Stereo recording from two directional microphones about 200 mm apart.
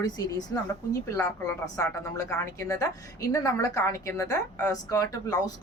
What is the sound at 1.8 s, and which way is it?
A woman's voice, 15° left (ahead or behind).